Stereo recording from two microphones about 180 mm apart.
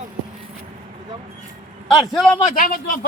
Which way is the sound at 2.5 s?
50° left (ahead or behind).